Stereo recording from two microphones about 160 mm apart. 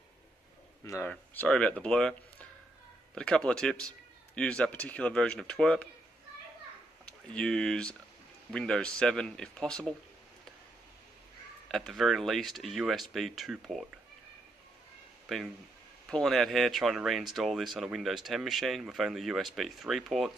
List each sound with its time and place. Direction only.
0.8 s speech: 15° left (ahead or behind)
3.2 s speech: 5° left (ahead or behind)
7.1 s speech: 5° left (ahead or behind)
11.7 s speech: centre (ahead or behind)
15.2 s speech: centre (ahead or behind)